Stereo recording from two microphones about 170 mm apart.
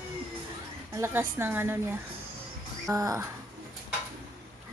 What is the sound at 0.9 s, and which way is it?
A woman's voice, 15° right (ahead or behind).